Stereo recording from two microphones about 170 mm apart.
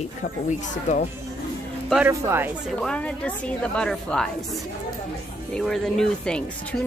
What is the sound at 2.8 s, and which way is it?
A woman's voice, 5° left (ahead or behind).